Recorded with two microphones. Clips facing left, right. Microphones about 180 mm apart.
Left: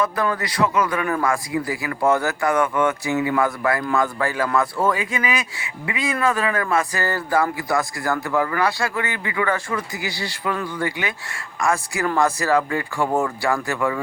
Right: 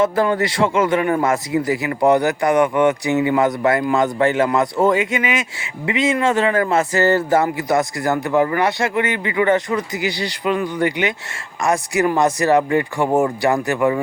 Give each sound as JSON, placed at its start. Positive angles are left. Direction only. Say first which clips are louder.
{"t": 0.0, "sound": "a man's voice", "louder": "right 6 dB", "side_deg": -25}